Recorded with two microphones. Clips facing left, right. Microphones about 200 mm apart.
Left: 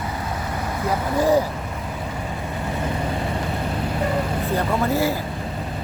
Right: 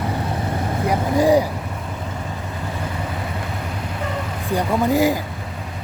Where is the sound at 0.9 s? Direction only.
15° right (ahead or behind).